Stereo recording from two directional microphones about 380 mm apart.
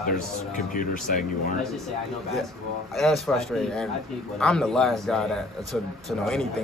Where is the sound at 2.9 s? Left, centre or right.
Centre.